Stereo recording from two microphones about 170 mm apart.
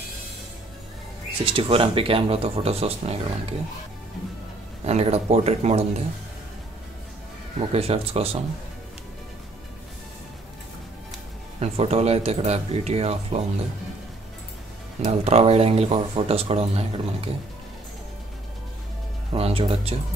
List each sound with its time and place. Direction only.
1.4 s speech: 30° right (ahead or behind)
4.8 s speech: 40° right (ahead or behind)
7.5 s speech: 35° right (ahead or behind)
11.6 s speech: 40° right (ahead or behind)
15.0 s speech: 40° right (ahead or behind)
19.3 s speech: 35° right (ahead or behind)